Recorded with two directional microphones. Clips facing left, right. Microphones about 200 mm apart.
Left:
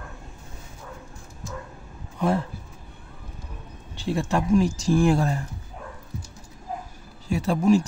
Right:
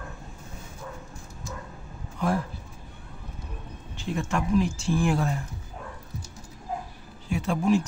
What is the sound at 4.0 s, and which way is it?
Speech, 35° left (ahead or behind).